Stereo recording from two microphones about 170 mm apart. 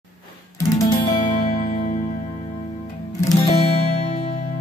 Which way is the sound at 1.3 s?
50° left (ahead or behind).